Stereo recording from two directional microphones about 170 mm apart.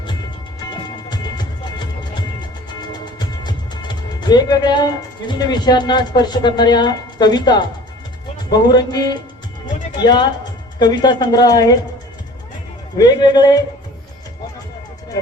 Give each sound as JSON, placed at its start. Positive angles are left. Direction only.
{"t": 4.2, "sound": "a woman's voice", "side_deg": 25}
{"t": 13.0, "sound": "a woman's voice", "side_deg": 25}